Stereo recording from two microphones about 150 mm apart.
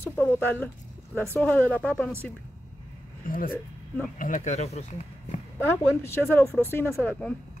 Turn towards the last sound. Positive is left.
turn(degrees=10)  # may be behind; listen again after turning